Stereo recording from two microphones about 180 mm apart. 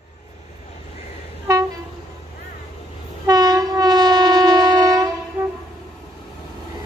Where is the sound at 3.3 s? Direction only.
20° right (ahead or behind).